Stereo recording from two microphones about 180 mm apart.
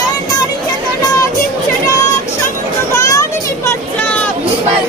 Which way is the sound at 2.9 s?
15° left (ahead or behind).